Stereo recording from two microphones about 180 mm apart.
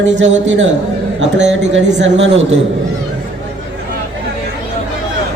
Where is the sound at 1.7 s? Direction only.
85° right.